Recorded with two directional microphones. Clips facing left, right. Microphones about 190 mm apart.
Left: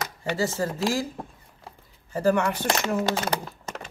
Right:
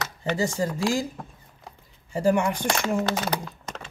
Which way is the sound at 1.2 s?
30° left (ahead or behind).